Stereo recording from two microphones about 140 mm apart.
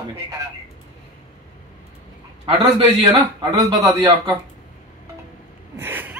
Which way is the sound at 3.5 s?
20° right (ahead or behind).